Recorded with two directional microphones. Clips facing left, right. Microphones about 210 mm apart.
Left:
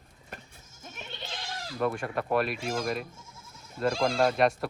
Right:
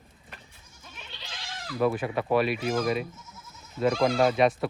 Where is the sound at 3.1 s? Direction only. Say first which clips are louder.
Right 2 dB; 30° left (ahead or behind).